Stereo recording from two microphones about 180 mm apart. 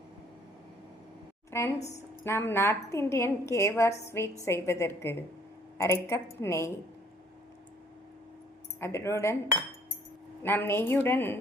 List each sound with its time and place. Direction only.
1.5 s a woman's voice: 15° left (ahead or behind)
8.8 s a woman's voice: 15° left (ahead or behind)
10.4 s a woman's voice: 10° left (ahead or behind)